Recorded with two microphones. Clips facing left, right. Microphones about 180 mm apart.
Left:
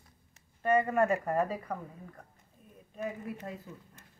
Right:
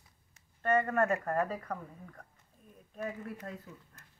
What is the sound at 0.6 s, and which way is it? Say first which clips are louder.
Speech: left 2 dB; 10° left (ahead or behind).